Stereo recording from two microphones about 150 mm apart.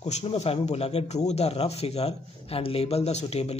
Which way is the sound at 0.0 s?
45° left (ahead or behind).